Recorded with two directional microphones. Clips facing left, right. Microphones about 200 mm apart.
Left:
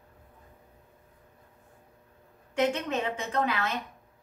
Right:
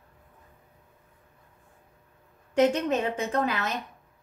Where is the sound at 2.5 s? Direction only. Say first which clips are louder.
Right 5 dB; 40° right (ahead or behind).